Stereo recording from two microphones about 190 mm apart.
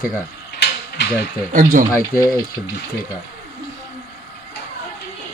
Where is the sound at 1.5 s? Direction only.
40° right (ahead or behind).